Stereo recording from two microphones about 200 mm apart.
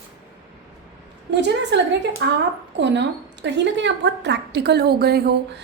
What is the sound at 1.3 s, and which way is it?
A woman's voice, 60° right (ahead or behind).